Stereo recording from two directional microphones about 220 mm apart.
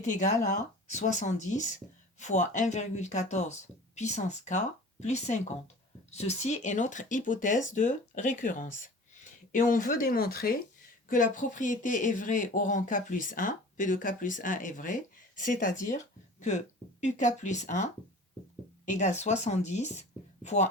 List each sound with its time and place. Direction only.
0.0 s speech: 35° left (ahead or behind)